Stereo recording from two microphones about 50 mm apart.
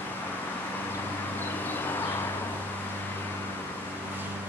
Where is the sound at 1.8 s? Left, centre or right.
Left.